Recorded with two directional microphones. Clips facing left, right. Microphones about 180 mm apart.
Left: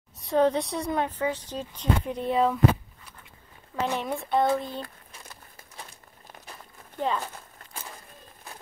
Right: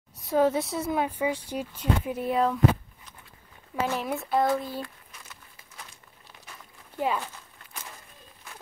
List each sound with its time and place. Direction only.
0.2 s speech: 5° right (ahead or behind)
3.8 s speech: centre (ahead or behind)
4.8 s crumpling: 45° left (ahead or behind)
7.0 s speech: 10° right (ahead or behind)